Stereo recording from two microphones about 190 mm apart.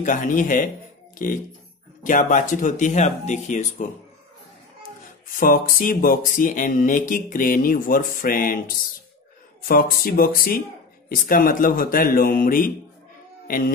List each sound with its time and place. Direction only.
0.0 s speech: 45° left (ahead or behind)
5.3 s speech: 45° left (ahead or behind)
9.7 s speech: 50° left (ahead or behind)